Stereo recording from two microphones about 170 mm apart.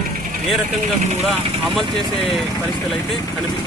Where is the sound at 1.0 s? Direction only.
40° right (ahead or behind).